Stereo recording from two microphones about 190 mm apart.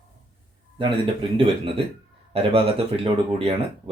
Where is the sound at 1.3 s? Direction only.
30° right (ahead or behind).